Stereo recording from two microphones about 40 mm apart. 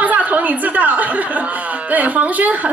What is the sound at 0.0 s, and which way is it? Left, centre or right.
Chuckle, right.